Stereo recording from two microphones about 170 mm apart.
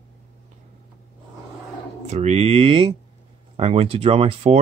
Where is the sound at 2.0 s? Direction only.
40° right (ahead or behind).